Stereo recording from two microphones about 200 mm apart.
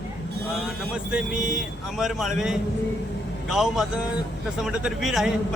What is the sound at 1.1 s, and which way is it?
Speech, 5° right (ahead or behind).